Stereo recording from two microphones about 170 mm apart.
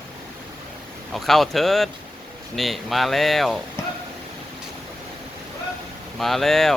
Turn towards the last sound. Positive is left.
turn(degrees=0)  # may be behind; listen again after turning